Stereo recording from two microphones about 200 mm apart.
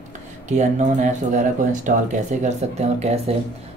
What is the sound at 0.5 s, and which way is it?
Speech, 35° right (ahead or behind).